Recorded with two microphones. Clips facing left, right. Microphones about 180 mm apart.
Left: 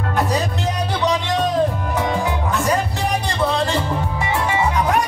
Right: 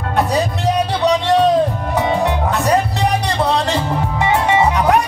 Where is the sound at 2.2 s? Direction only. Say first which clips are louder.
Right 4 dB; 65° right (ahead or behind).